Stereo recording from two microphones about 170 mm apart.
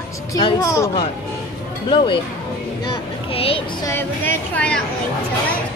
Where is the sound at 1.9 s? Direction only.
30° left (ahead or behind).